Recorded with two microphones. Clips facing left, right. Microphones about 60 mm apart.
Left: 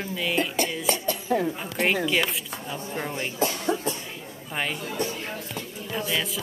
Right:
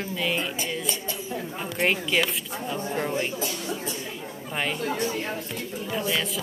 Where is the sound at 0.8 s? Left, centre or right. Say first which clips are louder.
Left 6 dB; left.